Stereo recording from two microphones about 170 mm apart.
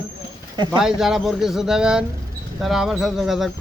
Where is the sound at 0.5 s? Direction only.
25° right (ahead or behind).